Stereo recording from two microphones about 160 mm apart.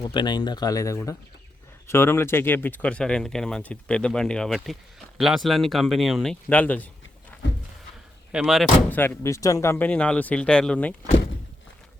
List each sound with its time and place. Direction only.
0.0 s speech: 30° left (ahead or behind); by 6.3 s centre (ahead or behind)
6.5 s speech: 10° left (ahead or behind)
8.3 s speech: 5° right (ahead or behind)
8.9 s speech: 15° left (ahead or behind)